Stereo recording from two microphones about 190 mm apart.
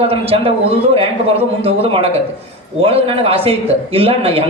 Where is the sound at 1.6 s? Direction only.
30° right (ahead or behind).